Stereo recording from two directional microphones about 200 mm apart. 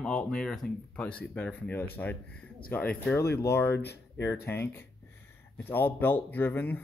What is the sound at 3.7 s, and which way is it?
Speech, 55° left (ahead or behind).